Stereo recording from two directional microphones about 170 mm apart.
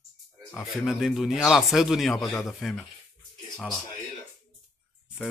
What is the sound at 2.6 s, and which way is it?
Speech, centre (ahead or behind).